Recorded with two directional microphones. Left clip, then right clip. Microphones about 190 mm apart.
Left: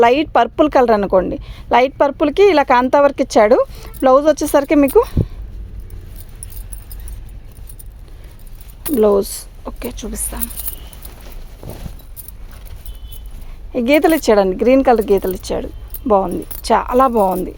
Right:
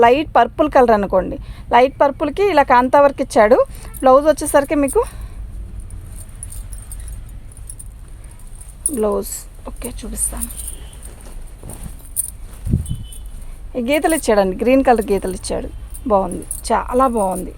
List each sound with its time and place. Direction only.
0.0 s a woman's voice: 25° left (ahead or behind)
9.0 s speech: 40° left (ahead or behind)
11.6 s a sound: 60° left (ahead or behind)
13.7 s a woman's voice: 35° left (ahead or behind); by 15.7 s 15° left (ahead or behind)
16.0 s speech: 30° left (ahead or behind)